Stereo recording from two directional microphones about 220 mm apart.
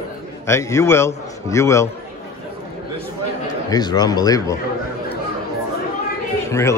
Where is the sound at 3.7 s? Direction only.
15° left (ahead or behind).